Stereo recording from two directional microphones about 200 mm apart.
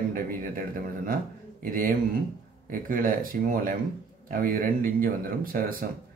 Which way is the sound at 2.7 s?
45° right (ahead or behind).